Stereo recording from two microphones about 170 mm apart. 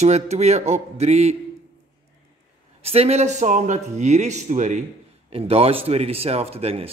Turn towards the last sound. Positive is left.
turn(degrees=-35)  # may be behind; listen again after turning